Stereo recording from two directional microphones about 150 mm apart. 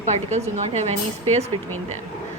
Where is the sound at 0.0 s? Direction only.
50° right (ahead or behind).